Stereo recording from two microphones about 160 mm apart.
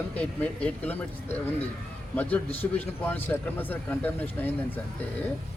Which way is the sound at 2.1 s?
10° left (ahead or behind).